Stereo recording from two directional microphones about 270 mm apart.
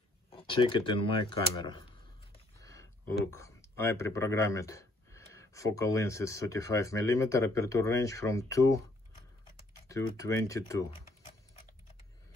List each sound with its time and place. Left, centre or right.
0.3 s speech: centre
2.6 s a sound: centre
3.3 s speech: centre
9.8 s speech: centre